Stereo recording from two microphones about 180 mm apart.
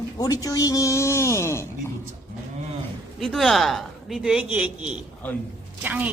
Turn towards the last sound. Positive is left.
turn(degrees=-10)  # may be behind; listen again after turning